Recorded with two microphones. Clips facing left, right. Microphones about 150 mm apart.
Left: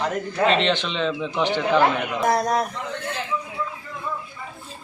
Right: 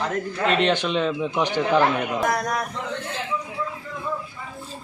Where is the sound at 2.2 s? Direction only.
30° left (ahead or behind).